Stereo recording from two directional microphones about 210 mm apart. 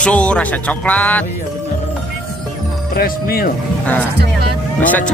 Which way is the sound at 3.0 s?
45° left (ahead or behind).